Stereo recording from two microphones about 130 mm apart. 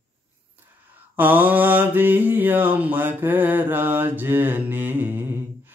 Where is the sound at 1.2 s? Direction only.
15° right (ahead or behind).